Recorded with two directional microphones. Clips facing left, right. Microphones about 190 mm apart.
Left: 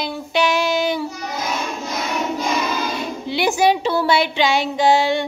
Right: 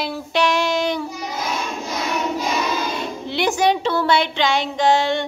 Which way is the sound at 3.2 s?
5° left (ahead or behind).